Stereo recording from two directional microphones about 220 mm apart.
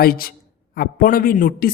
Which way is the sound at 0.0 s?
40° left (ahead or behind).